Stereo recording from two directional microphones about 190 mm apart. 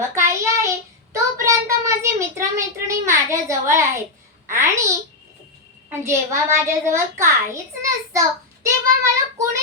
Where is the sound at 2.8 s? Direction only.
15° right (ahead or behind).